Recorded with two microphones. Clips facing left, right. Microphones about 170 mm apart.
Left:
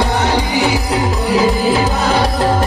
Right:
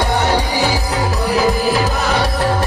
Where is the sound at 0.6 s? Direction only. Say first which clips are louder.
Left 2 dB; 25° left (ahead or behind).